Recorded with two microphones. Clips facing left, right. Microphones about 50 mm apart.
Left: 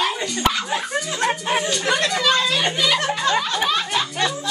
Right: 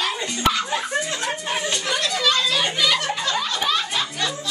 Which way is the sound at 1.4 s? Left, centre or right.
Centre.